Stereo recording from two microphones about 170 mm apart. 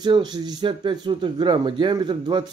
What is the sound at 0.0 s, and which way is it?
A man's voice, 25° right (ahead or behind).